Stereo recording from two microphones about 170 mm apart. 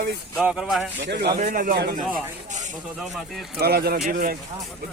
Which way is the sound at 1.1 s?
85° right.